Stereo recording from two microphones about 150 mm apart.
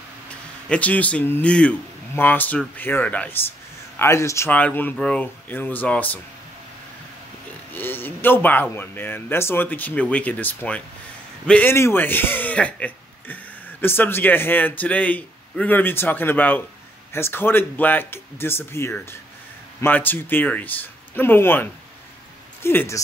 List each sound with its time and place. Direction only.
0.7 s speech: 10° left (ahead or behind)
7.7 s speech: 15° left (ahead or behind)